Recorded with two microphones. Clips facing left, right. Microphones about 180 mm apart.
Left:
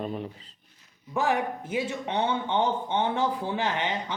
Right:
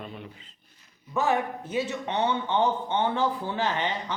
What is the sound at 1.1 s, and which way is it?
Speech, 15° left (ahead or behind).